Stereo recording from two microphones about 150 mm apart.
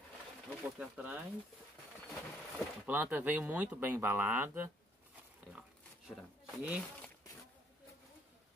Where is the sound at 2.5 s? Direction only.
10° right (ahead or behind).